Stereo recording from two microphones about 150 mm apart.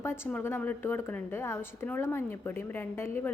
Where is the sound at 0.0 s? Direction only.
15° left (ahead or behind).